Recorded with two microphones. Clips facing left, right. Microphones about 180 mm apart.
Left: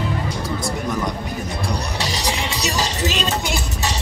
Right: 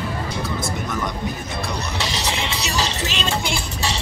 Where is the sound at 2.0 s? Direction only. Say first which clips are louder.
Left 1 dB; 40° left (ahead or behind).